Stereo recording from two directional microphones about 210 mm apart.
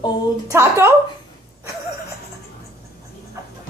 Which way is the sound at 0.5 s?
15° right (ahead or behind).